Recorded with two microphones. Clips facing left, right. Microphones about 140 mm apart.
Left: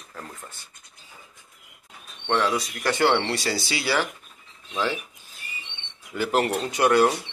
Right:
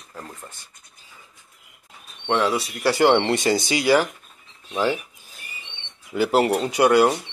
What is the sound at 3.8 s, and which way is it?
Speech, 45° right (ahead or behind).